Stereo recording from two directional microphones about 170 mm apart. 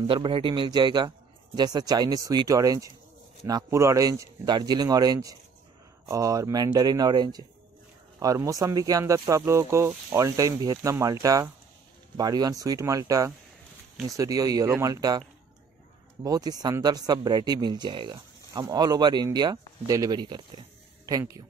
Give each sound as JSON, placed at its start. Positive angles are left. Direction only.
{"t": 0.0, "sound": "speech", "side_deg": -30}